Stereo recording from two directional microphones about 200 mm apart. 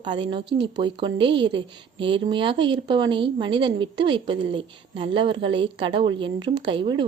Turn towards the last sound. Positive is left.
turn(degrees=-25)  # may be behind; listen again after turning